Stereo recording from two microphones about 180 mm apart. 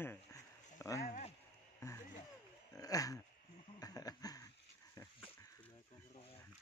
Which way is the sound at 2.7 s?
20° left (ahead or behind).